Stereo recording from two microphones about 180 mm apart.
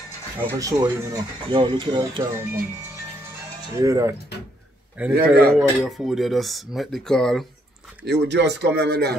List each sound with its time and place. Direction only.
0.6 s speech: 20° right (ahead or behind)
3.7 s speech: 20° right (ahead or behind); by 7.4 s 5° left (ahead or behind)
8.0 s speech: 70° right (ahead or behind)